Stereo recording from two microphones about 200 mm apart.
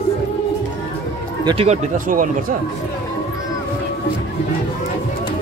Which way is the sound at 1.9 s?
40° right (ahead or behind).